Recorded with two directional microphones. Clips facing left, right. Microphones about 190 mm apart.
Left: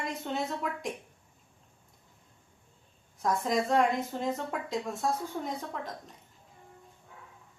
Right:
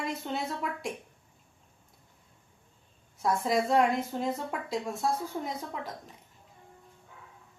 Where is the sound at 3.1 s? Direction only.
Centre (ahead or behind).